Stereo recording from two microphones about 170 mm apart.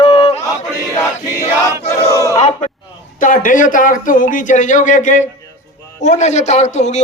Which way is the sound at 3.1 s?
50° left (ahead or behind).